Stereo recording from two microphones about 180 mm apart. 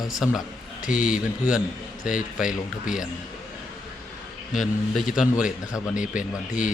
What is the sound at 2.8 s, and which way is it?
Speech, 5° right (ahead or behind).